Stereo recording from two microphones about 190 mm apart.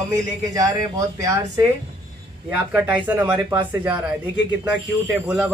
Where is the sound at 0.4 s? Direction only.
15° right (ahead or behind).